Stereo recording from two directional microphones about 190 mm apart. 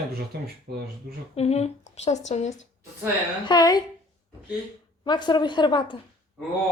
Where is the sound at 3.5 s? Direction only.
20° left (ahead or behind).